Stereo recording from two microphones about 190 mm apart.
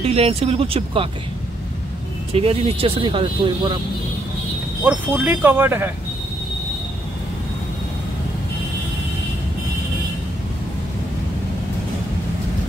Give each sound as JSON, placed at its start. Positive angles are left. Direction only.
{"t": 0.0, "sound": "speech", "side_deg": -35}
{"t": 2.3, "sound": "speech", "side_deg": -30}
{"t": 4.8, "sound": "speech", "side_deg": -10}